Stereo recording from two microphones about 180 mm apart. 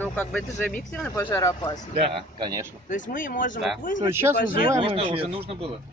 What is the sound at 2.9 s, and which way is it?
Speech, 45° left (ahead or behind).